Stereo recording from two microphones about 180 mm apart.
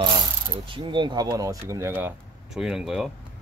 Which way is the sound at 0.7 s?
25° right (ahead or behind).